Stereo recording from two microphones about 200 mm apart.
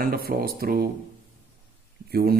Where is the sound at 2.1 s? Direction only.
50° right (ahead or behind).